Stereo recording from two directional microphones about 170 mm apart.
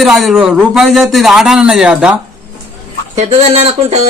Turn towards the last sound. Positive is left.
turn(degrees=-40)  # may be behind; listen again after turning